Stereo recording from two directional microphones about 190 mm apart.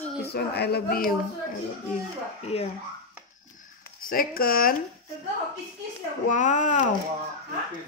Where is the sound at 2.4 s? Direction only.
30° left (ahead or behind).